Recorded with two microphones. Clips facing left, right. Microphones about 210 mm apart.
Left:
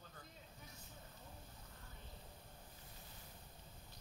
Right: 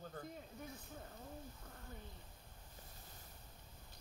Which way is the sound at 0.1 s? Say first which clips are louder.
Right 10 dB; 55° right (ahead or behind).